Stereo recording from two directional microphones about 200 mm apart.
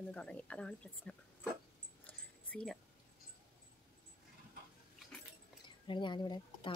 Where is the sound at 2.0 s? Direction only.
5° left (ahead or behind).